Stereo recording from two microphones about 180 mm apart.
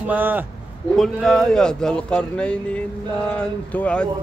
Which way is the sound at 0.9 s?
Centre (ahead or behind).